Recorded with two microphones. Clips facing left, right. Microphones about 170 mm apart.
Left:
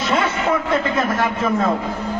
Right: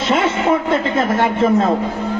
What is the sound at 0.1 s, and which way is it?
Speech, 25° right (ahead or behind).